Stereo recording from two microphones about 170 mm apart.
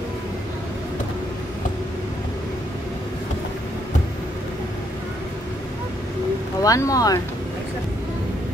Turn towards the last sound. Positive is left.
turn(degrees=20)  # may be behind; listen again after turning